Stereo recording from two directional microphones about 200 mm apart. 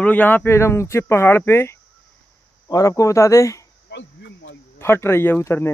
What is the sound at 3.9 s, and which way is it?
Speech, 60° left (ahead or behind).